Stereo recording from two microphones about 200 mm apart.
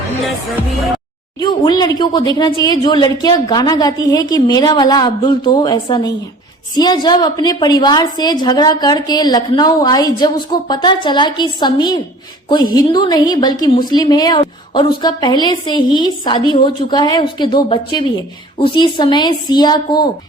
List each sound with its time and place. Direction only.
1.4 s a woman's voice: 20° left (ahead or behind)